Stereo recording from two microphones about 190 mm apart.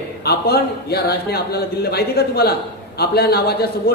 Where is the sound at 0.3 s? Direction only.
55° left (ahead or behind).